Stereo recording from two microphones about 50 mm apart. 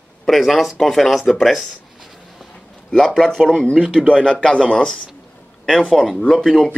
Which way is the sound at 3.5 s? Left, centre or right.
Left.